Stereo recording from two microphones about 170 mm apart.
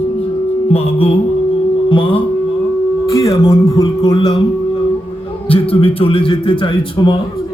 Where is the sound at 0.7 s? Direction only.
35° left (ahead or behind).